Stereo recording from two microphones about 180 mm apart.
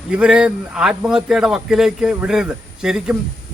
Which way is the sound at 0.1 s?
5° right (ahead or behind).